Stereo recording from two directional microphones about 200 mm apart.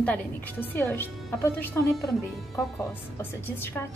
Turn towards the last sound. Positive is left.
turn(degrees=10)  # may be behind; listen again after turning